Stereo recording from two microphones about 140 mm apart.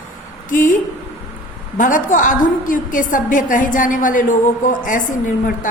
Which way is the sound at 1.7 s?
70° left (ahead or behind).